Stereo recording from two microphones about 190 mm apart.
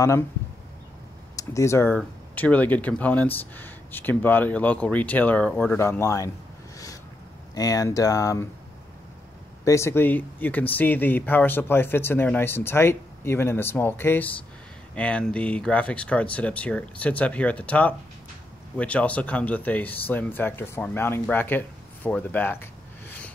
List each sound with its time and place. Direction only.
1.3 s speech: 15° left (ahead or behind)
7.5 s speech: 20° left (ahead or behind)
9.7 s speech: 15° left (ahead or behind)